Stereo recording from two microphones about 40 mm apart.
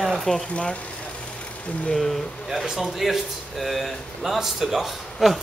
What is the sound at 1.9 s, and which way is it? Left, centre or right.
Speech, centre.